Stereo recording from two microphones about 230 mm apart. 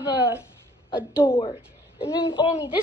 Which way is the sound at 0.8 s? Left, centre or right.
Centre.